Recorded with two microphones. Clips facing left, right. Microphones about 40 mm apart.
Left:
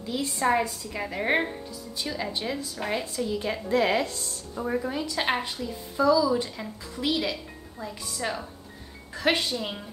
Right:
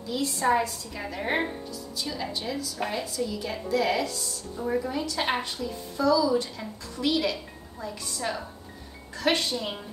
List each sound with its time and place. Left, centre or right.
0.1 s a woman's voice: centre; by 4.6 s left
4.6 s a woman's voice: centre
9.5 s a woman's voice: centre